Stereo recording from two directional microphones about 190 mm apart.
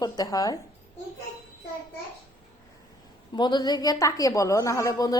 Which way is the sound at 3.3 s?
25° left (ahead or behind).